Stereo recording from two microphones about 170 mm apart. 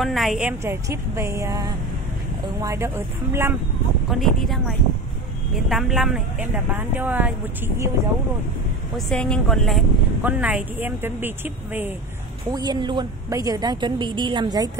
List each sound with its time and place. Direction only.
0.0 s speech: centre (ahead or behind)
4.1 s speech: centre (ahead or behind)
8.9 s speech: 5° left (ahead or behind)
10.2 s speech: 10° right (ahead or behind)
12.4 s a woman's voice: 25° right (ahead or behind)